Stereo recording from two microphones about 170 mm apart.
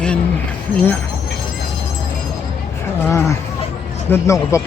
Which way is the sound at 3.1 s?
15° left (ahead or behind).